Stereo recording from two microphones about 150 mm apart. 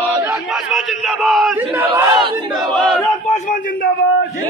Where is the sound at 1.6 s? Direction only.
15° right (ahead or behind).